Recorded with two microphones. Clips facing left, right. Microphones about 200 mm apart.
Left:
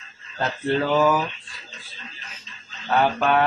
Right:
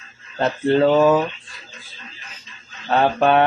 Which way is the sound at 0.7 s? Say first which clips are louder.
Right 5 dB; 25° right (ahead or behind).